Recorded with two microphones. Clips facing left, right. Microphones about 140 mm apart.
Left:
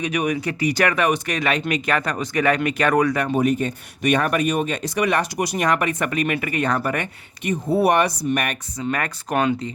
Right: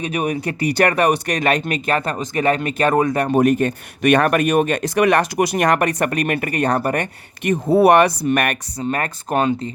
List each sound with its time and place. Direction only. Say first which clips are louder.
0.0 s speech: right 1 dB; 35° right (ahead or behind)
3.2 s speech: right 4 dB; 45° right (ahead or behind)
3.6 s speech: right 5 dB; 75° right (ahead or behind); by 7.1 s 45° right (ahead or behind)
7.7 s speech: right 6 dB; 70° right (ahead or behind)
8.8 s speech: right 2 dB; 35° right (ahead or behind)